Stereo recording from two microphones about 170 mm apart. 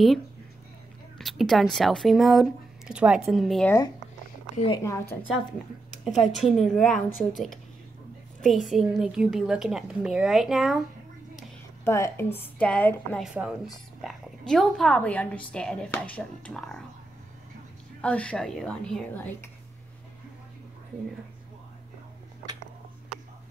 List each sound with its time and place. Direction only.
1.1 s a woman's voice: centre (ahead or behind)
4.6 s a woman's voice: 30° left (ahead or behind)
4.8 s a woman's voice: 15° left (ahead or behind)
6.1 s a woman's voice: centre (ahead or behind)
11.8 s a woman's voice: 15° left (ahead or behind)
18.0 s a woman's voice: 5° left (ahead or behind)